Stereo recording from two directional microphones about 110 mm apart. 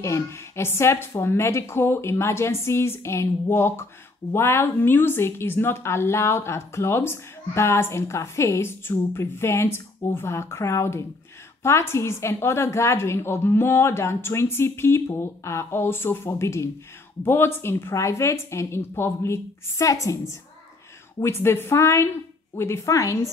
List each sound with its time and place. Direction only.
0.0 s a woman's voice: 25° left (ahead or behind)